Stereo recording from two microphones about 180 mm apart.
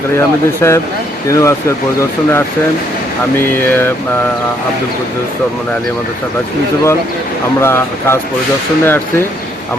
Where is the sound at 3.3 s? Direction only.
10° left (ahead or behind).